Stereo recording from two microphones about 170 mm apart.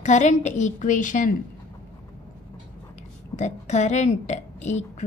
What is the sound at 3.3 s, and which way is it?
A woman's voice, 40° left (ahead or behind).